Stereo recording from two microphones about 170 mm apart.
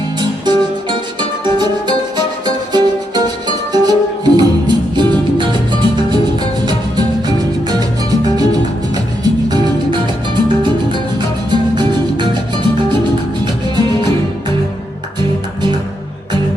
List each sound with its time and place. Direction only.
0.2 s music: 25° right (ahead or behind)
13.4 s music: 25° right (ahead or behind)